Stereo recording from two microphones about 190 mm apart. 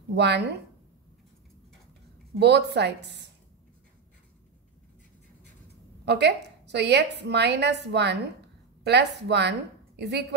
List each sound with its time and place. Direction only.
0.1 s a woman's voice: 60° right (ahead or behind)
2.3 s a woman's voice: 60° right (ahead or behind)
6.0 s a woman's voice: 60° right (ahead or behind)